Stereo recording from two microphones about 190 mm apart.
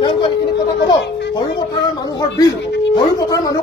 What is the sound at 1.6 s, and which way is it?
A woman's voice, 20° left (ahead or behind).